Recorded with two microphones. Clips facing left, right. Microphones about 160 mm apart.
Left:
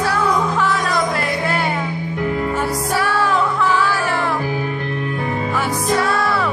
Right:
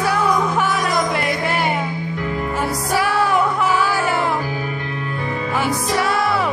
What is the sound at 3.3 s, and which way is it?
Music, 15° right (ahead or behind).